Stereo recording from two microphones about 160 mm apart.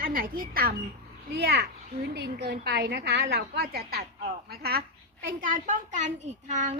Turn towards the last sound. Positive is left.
turn(degrees=-50)  # may be behind; listen again after turning